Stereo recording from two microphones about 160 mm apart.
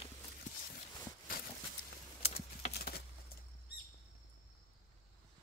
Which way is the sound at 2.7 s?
80° left.